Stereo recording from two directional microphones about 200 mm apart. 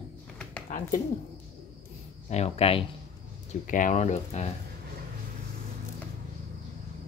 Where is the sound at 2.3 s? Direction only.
30° left (ahead or behind).